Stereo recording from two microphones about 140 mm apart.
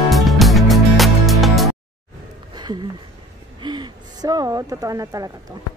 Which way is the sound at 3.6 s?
35° right (ahead or behind).